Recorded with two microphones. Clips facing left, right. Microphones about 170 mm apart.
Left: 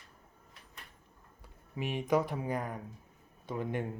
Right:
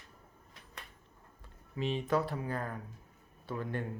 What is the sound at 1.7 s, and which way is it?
Speech, 15° left (ahead or behind).